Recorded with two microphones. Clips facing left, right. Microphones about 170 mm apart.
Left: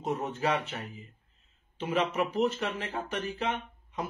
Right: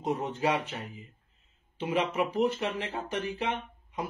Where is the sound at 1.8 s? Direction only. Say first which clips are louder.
Even; 10° right (ahead or behind).